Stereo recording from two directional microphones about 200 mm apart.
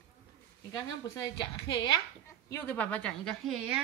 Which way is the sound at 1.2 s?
20° left (ahead or behind).